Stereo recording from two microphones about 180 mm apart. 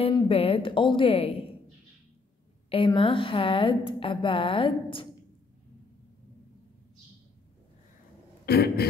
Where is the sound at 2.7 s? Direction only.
30° left (ahead or behind).